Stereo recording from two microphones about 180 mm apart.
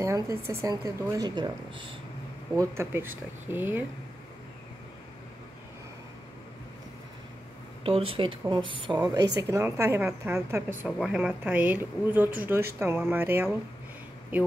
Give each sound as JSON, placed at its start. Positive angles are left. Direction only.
{"t": 0.0, "sound": "a woman's voice", "side_deg": -15}
{"t": 7.8, "sound": "a woman's voice", "side_deg": -30}